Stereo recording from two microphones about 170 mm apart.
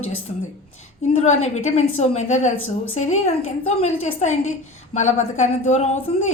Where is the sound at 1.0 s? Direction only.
40° left (ahead or behind).